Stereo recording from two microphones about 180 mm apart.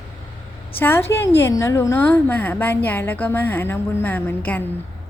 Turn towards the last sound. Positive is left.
turn(degrees=10)  # may be behind; listen again after turning